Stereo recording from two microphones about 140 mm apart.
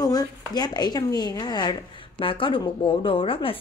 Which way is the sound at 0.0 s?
30° left (ahead or behind).